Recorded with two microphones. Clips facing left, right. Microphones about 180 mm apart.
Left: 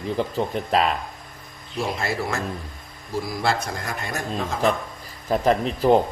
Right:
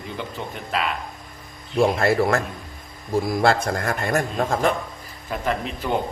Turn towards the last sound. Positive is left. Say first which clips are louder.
# left 7 dB
turn(degrees=35)  # may be behind; listen again after turning